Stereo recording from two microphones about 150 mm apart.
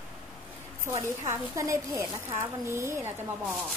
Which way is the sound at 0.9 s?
20° right (ahead or behind).